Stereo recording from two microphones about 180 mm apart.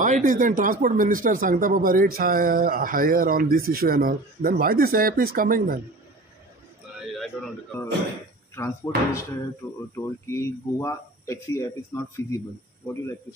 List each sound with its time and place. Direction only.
0.0 s speech: 45° right (ahead or behind)
7.3 s speech: 10° left (ahead or behind)
8.5 s speech: 15° left (ahead or behind)